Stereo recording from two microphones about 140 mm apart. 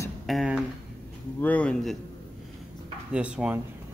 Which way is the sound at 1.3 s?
10° left (ahead or behind).